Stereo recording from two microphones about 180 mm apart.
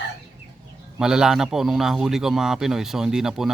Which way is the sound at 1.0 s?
5° right (ahead or behind).